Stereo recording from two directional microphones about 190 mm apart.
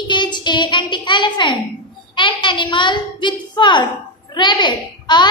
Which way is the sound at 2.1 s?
25° left (ahead or behind).